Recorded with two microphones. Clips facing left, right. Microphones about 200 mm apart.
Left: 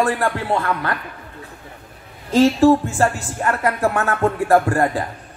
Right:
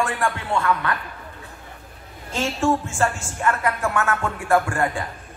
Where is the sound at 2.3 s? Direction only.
35° left (ahead or behind).